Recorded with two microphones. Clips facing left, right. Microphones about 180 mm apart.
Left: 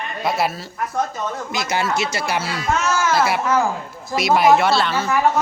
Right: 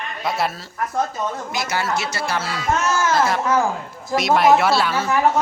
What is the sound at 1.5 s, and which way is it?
Speech, 20° left (ahead or behind).